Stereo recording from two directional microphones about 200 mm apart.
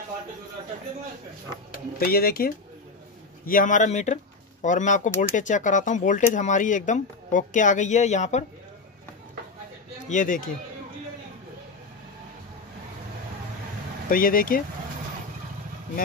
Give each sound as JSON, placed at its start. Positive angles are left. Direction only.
{"t": 2.0, "sound": "speech", "side_deg": 50}
{"t": 10.0, "sound": "speech", "side_deg": 40}
{"t": 14.1, "sound": "speech", "side_deg": 45}